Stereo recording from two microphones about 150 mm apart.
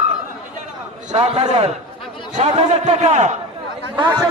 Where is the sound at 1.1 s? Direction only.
45° right (ahead or behind).